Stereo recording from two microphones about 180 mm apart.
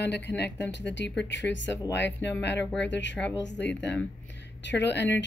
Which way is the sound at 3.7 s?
5° left (ahead or behind).